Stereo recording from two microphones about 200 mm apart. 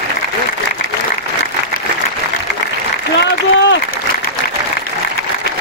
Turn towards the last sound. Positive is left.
turn(degrees=60)  # may be behind; listen again after turning